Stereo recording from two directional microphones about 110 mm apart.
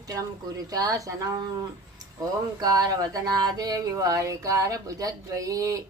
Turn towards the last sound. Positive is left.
turn(degrees=-30)  # may be behind; listen again after turning